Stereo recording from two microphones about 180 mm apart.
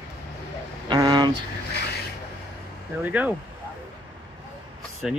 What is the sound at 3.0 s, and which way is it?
Speech, 10° right (ahead or behind).